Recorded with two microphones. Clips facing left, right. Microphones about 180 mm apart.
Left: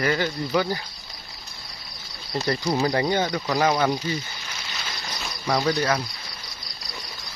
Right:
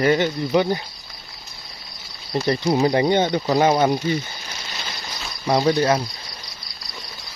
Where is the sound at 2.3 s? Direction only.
25° right (ahead or behind).